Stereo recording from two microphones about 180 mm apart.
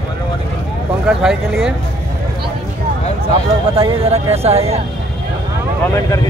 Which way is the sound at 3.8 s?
35° right (ahead or behind).